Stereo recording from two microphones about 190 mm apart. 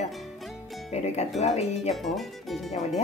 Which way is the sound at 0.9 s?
35° left (ahead or behind).